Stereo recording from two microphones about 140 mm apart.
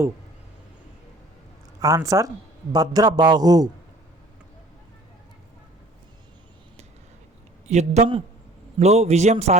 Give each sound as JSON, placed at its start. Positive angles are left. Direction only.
{"t": 1.8, "sound": "a man's voice", "side_deg": -25}
{"t": 7.7, "sound": "a man's voice", "side_deg": -55}